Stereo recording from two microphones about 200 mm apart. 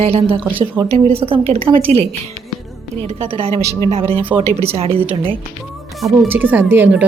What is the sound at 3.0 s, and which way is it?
A woman's voice, 30° right (ahead or behind).